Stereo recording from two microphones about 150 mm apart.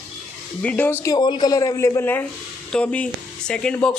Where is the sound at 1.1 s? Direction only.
30° left (ahead or behind).